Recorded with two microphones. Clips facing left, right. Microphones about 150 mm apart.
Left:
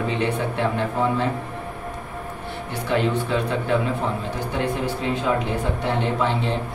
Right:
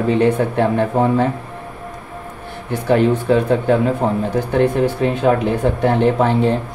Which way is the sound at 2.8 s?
45° right (ahead or behind).